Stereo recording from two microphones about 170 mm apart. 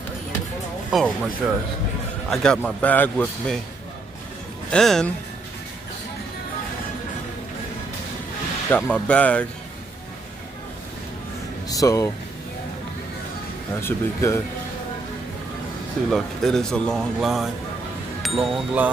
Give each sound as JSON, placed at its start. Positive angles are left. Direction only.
{"t": 0.9, "sound": "speech", "side_deg": 0}
{"t": 4.6, "sound": "speech", "side_deg": 5}
{"t": 8.6, "sound": "speech", "side_deg": 10}
{"t": 11.7, "sound": "speech", "side_deg": 20}
{"t": 13.7, "sound": "speech", "side_deg": 15}
{"t": 16.1, "sound": "speech", "side_deg": 0}